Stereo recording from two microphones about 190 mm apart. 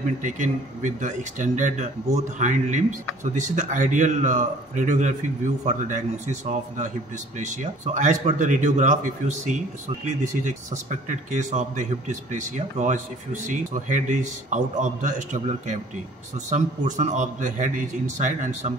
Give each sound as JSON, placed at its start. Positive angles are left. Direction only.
{"t": 0.2, "sound": "speech", "side_deg": -40}